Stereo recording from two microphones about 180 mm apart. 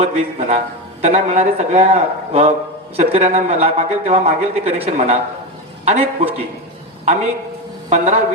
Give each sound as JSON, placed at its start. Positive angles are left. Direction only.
{"t": 0.0, "sound": "a man's voice", "side_deg": -40}